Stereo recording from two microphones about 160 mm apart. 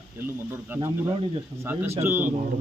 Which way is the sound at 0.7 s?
20° right (ahead or behind).